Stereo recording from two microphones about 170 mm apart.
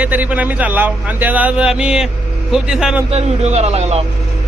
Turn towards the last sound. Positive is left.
turn(degrees=-40)  # may be behind; listen again after turning